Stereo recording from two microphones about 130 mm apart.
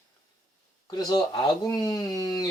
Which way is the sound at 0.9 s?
30° left (ahead or behind).